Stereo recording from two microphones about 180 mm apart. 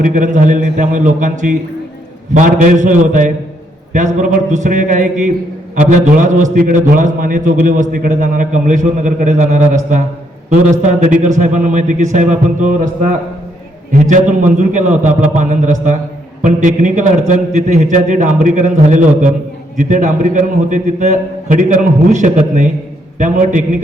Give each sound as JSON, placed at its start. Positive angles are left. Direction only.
{"t": 0.0, "sound": "a man's voice", "side_deg": -45}